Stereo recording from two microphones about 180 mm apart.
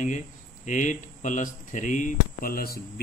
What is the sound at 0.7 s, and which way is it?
Speech, 45° left (ahead or behind).